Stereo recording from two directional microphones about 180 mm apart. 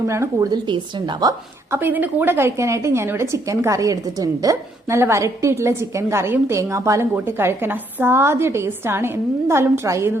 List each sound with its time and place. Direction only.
0.1 s speech: 15° right (ahead or behind)
1.7 s a woman's voice: 10° right (ahead or behind)